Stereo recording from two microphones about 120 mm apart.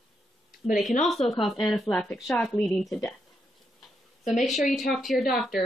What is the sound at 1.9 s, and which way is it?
Speech, 10° left (ahead or behind).